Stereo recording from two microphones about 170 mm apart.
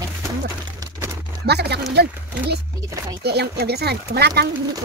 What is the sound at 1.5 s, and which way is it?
Speech, 75° right (ahead or behind).